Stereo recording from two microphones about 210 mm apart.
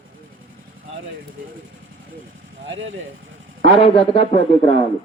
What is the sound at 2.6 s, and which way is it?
Speech, 65° right (ahead or behind).